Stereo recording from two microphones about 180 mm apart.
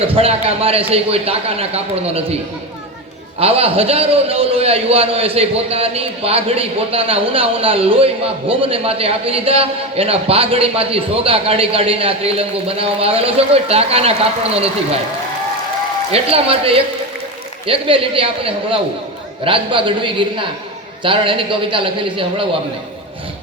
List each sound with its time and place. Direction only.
0.0 s a man's voice: 30° right (ahead or behind)
3.4 s a man's voice: 35° right (ahead or behind)
16.1 s a man's voice: 35° right (ahead or behind)